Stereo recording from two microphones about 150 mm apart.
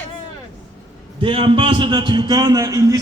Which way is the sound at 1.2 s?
35° right (ahead or behind).